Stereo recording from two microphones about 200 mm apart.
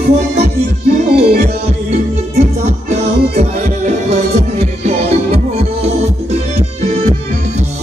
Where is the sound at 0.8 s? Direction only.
50° right (ahead or behind).